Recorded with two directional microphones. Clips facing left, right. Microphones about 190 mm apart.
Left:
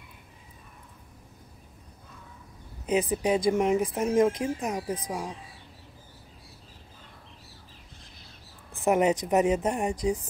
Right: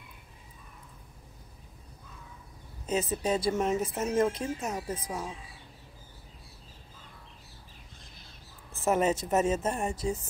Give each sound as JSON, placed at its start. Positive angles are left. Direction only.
{"t": 2.9, "sound": "speech", "side_deg": 15}
{"t": 8.7, "sound": "speech", "side_deg": 15}